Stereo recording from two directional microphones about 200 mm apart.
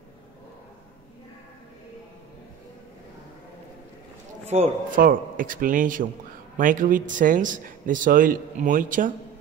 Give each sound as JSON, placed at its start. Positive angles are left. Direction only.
{"t": 4.5, "sound": "a man's voice", "side_deg": -40}